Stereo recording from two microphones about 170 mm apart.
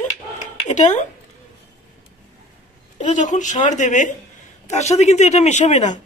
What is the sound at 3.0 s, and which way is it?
A woman's voice, 45° left (ahead or behind).